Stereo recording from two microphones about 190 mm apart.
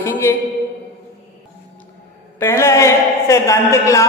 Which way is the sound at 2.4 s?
15° left (ahead or behind).